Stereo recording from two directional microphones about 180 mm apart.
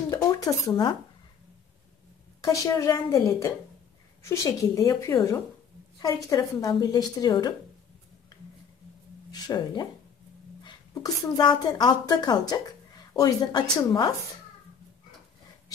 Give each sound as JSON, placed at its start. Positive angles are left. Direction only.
{"t": 0.1, "sound": "dishes", "side_deg": 20}
{"t": 2.4, "sound": "a woman's voice", "side_deg": 20}
{"t": 9.3, "sound": "a woman's voice", "side_deg": 20}